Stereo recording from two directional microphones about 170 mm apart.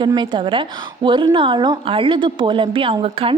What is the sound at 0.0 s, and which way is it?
A woman's voice, 25° right (ahead or behind).